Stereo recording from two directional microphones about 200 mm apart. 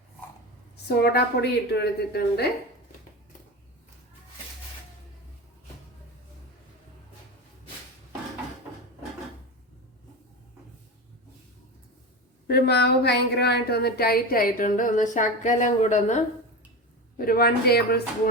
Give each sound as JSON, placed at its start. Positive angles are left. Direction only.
{"t": 0.9, "sound": "a woman's voice", "side_deg": 50}
{"t": 12.5, "sound": "a woman's voice", "side_deg": 55}
{"t": 17.2, "sound": "a woman's voice", "side_deg": 45}